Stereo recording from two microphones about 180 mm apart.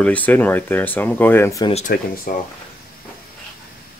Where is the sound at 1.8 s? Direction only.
50° left (ahead or behind).